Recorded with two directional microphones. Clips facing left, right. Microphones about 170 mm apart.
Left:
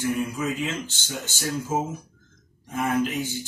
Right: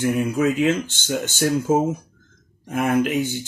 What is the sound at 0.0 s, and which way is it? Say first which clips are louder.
Speech: right 6 dB; 70° right (ahead or behind).